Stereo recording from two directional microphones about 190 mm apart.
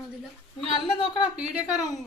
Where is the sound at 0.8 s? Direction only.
25° left (ahead or behind).